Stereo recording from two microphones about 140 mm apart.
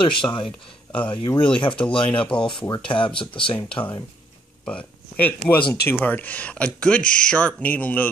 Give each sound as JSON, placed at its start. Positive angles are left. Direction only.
{"t": 0.0, "sound": "speech", "side_deg": 35}
{"t": 0.5, "sound": "speech", "side_deg": 10}
{"t": 1.1, "sound": "speech", "side_deg": 35}
{"t": 2.2, "sound": "speech", "side_deg": 5}
{"t": 2.9, "sound": "speech", "side_deg": 35}
{"t": 4.6, "sound": "speech", "side_deg": 10}